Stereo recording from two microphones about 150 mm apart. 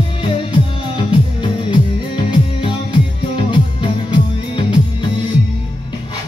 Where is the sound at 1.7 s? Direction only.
35° left (ahead or behind).